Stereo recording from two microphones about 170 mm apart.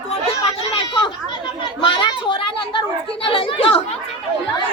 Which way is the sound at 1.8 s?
25° left (ahead or behind).